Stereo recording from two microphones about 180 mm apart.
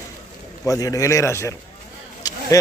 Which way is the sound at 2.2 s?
20° left (ahead or behind).